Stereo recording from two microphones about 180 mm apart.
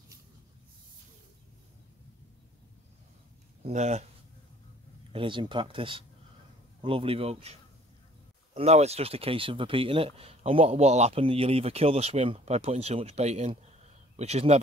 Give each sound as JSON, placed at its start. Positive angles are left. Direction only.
{"t": 3.6, "sound": "speech", "side_deg": -40}
{"t": 5.1, "sound": "speech", "side_deg": -25}
{"t": 8.5, "sound": "speech", "side_deg": -35}